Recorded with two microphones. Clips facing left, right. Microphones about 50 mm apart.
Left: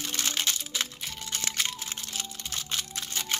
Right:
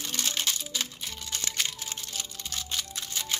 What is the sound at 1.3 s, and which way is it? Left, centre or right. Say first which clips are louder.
Music: left 1 dB; left.